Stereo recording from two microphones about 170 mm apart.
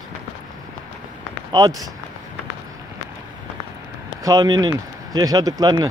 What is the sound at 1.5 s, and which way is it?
Speech, 20° right (ahead or behind).